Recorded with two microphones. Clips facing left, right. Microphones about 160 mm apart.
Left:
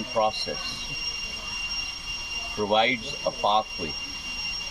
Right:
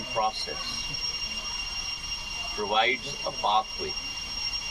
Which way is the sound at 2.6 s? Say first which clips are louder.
Left 4 dB; 20° left (ahead or behind).